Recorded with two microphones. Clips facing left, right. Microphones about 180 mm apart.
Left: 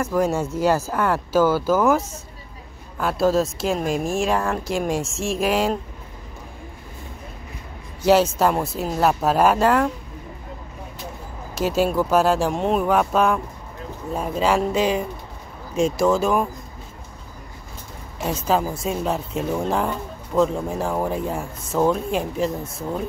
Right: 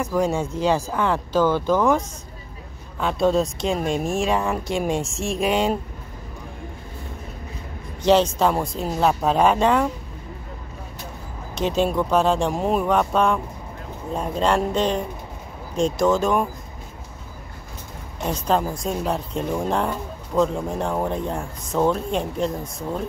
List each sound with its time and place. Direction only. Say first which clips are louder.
0.0 s speech: left 1 dB; 5° left (ahead or behind)
8.0 s speech: left 1 dB; 5° left (ahead or behind)
11.5 s speech: left 1 dB; 5° left (ahead or behind)
18.2 s speech: even; 5° left (ahead or behind)